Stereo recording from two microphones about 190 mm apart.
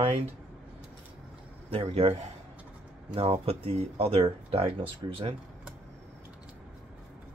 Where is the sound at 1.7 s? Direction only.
30° right (ahead or behind).